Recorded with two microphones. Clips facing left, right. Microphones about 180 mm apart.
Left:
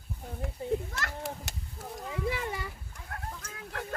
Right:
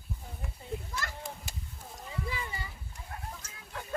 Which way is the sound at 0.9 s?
70° left (ahead or behind).